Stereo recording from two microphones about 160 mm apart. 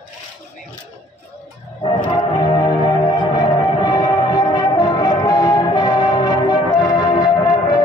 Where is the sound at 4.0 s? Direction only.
25° left (ahead or behind).